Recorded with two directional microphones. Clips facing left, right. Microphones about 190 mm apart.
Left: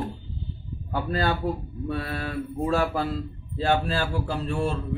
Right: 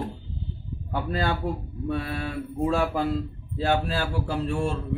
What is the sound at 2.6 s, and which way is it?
Speech, 15° right (ahead or behind).